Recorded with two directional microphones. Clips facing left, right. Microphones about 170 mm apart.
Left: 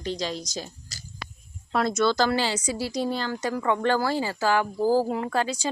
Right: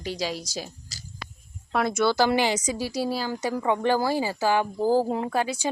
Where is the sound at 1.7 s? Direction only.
5° right (ahead or behind).